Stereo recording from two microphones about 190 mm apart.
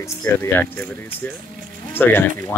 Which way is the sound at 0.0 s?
10° left (ahead or behind).